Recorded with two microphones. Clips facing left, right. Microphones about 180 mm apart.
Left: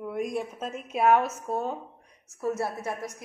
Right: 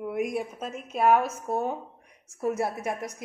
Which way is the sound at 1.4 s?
15° right (ahead or behind).